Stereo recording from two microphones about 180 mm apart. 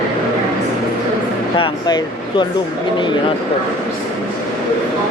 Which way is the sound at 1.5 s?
25° left (ahead or behind).